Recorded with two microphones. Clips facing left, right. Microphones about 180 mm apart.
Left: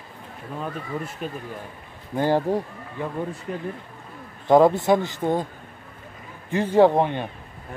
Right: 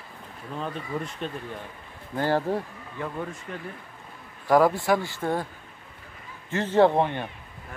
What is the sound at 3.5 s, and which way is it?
Speech, 25° left (ahead or behind).